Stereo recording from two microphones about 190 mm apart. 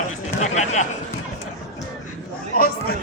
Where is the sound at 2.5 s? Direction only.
50° left (ahead or behind).